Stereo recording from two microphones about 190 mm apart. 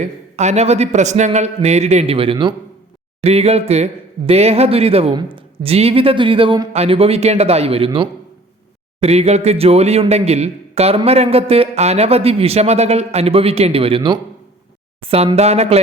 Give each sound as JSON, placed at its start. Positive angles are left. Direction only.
{"t": 0.0, "sound": "speech", "side_deg": -35}